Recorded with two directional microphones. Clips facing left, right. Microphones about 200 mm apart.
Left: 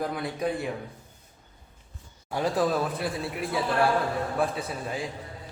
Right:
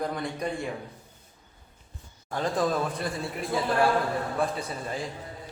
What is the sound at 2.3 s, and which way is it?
Speech, 10° left (ahead or behind).